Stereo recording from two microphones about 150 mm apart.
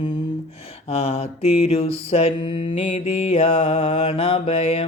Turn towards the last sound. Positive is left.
turn(degrees=40)  # may be behind; listen again after turning